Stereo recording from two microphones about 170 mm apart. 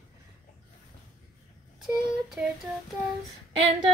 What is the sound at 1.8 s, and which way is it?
Child singing, 5° right (ahead or behind).